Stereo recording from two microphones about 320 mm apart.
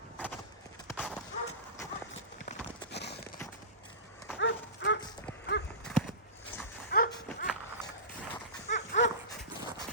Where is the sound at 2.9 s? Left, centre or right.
Left.